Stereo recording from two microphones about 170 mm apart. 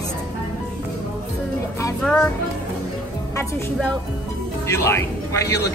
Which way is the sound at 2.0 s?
10° left (ahead or behind).